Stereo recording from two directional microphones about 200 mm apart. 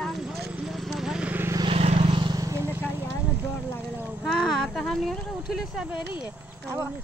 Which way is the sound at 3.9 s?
10° right (ahead or behind).